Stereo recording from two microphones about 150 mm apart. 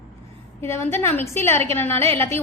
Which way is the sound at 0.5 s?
15° left (ahead or behind).